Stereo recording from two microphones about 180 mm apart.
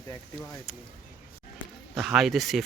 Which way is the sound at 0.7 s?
5° right (ahead or behind).